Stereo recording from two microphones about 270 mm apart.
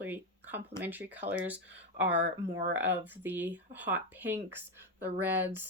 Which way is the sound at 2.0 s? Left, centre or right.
Right.